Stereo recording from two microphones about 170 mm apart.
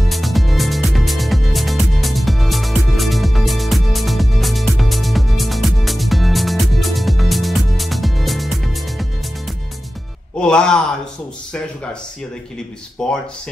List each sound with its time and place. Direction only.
0.1 s music: centre (ahead or behind)
10.4 s a sound: 5° left (ahead or behind)
13.0 s speech: 5° left (ahead or behind)